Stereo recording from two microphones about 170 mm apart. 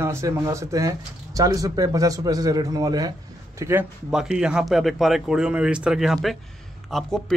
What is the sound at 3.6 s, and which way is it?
Speech, 10° right (ahead or behind).